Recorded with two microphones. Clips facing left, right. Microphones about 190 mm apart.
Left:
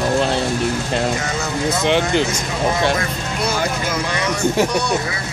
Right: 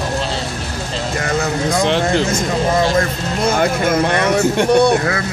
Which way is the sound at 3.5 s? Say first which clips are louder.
Right 8 dB; 55° right (ahead or behind).